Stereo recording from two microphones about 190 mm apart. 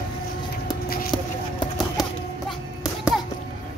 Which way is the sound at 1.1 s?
25° left (ahead or behind).